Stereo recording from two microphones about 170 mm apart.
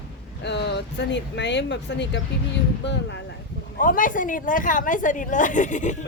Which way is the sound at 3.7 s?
55° left (ahead or behind).